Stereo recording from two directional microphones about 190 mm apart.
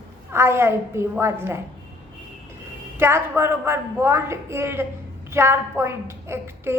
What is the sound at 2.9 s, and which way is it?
A woman's voice, 10° right (ahead or behind).